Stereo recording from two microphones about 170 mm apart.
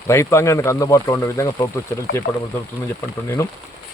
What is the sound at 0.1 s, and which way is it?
Speech, 15° left (ahead or behind).